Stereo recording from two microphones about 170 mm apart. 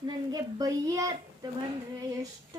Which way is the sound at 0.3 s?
20° right (ahead or behind).